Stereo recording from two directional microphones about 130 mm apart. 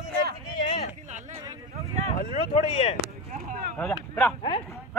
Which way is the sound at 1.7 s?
55° right (ahead or behind).